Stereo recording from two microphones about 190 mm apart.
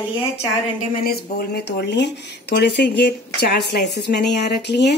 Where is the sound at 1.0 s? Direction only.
60° left (ahead or behind).